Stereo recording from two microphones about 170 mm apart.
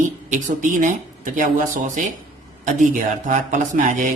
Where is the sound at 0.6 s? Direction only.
50° right (ahead or behind).